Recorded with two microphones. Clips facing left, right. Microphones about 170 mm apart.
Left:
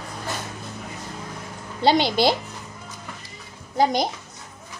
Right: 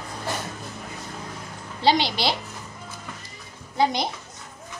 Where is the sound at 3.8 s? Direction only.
45° left (ahead or behind).